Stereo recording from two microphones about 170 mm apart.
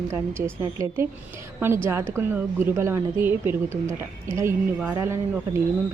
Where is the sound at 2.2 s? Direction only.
10° right (ahead or behind).